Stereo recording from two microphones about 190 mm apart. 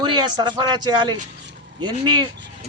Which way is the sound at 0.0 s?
20° right (ahead or behind).